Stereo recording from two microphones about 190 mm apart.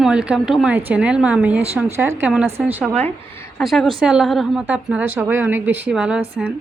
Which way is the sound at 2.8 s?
5° left (ahead or behind).